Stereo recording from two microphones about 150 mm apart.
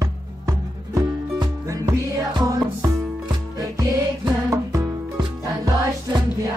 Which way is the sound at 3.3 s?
25° right (ahead or behind).